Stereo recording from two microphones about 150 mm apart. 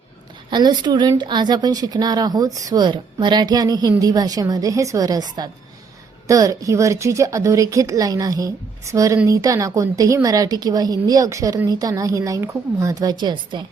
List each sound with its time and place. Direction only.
0.5 s speech: 25° right (ahead or behind)